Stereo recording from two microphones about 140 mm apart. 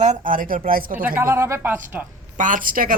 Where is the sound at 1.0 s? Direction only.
15° right (ahead or behind).